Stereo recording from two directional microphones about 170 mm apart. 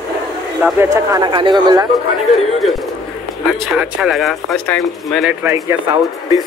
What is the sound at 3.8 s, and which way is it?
Speech, 5° right (ahead or behind).